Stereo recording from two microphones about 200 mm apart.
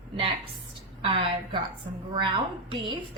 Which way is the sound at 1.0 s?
25° right (ahead or behind).